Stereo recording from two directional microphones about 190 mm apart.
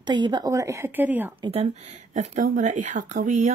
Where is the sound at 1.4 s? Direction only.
30° right (ahead or behind).